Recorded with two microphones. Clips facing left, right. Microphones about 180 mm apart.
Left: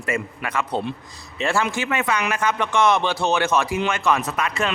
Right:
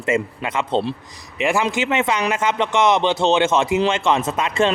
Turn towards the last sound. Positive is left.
turn(degrees=-25)  # may be behind; listen again after turning